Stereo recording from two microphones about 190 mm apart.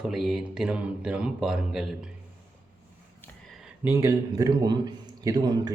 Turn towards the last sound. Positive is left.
turn(degrees=-20)  # may be behind; listen again after turning